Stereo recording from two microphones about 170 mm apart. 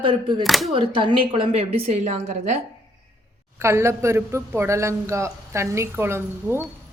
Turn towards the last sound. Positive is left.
turn(degrees=-15)  # may be behind; listen again after turning